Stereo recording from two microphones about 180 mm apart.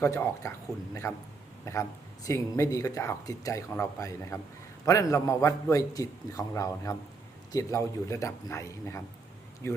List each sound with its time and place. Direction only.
0.0 s speech: 15° left (ahead or behind)
1.6 s speech: 15° left (ahead or behind)